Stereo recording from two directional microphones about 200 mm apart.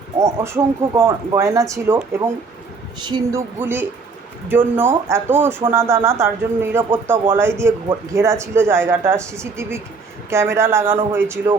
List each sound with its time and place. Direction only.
0.2 s speech: 15° right (ahead or behind)
3.6 s speech: 10° right (ahead or behind)